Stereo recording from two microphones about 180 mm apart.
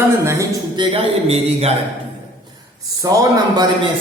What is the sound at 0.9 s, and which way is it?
Speech, 35° right (ahead or behind).